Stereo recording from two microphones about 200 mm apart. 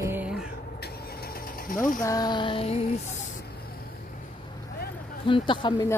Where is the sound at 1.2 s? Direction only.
45° left (ahead or behind).